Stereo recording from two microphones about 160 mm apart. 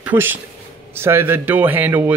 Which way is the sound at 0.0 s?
10° right (ahead or behind).